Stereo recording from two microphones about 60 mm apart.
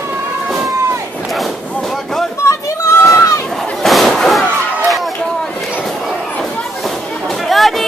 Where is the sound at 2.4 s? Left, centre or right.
Left.